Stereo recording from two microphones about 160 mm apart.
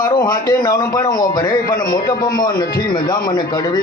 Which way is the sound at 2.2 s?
65° left (ahead or behind).